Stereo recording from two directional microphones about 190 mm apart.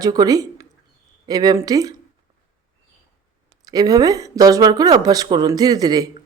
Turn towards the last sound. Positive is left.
turn(degrees=-20)  # may be behind; listen again after turning